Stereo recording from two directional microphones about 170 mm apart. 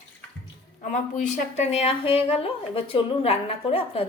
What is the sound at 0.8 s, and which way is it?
Speech, 50° left (ahead or behind).